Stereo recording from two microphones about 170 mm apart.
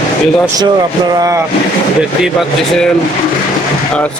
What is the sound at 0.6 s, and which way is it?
Speech, 25° right (ahead or behind).